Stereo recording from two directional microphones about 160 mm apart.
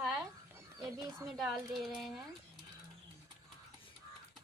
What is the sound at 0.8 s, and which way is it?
Speech, 20° right (ahead or behind).